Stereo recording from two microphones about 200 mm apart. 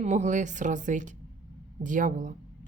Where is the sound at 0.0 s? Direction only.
35° right (ahead or behind).